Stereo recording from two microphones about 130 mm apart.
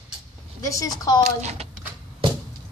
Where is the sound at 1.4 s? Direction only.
60° right (ahead or behind).